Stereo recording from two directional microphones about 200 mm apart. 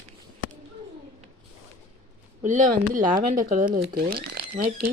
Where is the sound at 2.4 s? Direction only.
40° right (ahead or behind).